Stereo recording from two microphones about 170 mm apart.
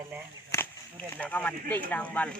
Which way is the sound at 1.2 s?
10° left (ahead or behind).